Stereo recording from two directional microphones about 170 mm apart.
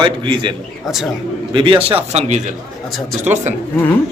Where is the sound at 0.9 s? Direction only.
Centre (ahead or behind).